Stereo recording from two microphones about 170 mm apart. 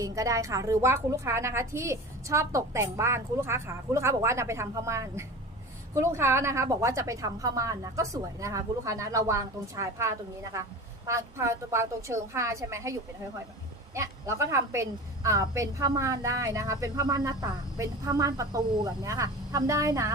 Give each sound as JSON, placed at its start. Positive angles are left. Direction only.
{"t": 0.0, "sound": "a woman's voice", "side_deg": -20}